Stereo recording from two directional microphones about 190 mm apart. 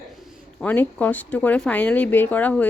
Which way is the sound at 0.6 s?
10° left (ahead or behind).